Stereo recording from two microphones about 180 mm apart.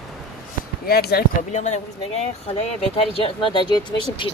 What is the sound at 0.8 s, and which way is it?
Speech, 60° left (ahead or behind).